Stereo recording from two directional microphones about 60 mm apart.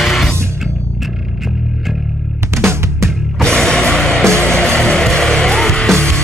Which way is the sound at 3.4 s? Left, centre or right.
Centre.